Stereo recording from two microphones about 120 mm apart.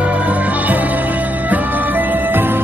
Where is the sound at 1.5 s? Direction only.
15° right (ahead or behind).